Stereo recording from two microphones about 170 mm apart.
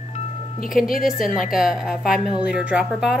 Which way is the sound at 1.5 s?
Centre (ahead or behind).